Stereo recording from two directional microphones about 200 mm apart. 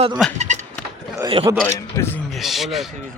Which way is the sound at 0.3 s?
35° right (ahead or behind).